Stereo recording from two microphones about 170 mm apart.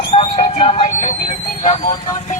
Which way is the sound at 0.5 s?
40° left (ahead or behind).